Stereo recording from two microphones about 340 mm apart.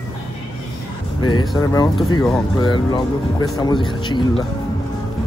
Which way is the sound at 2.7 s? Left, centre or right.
Centre.